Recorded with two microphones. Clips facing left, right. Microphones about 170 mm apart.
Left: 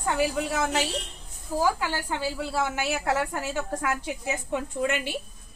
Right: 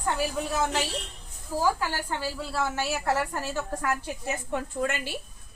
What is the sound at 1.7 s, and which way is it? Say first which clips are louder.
A woman's voice: left 1 dB; 15° left (ahead or behind).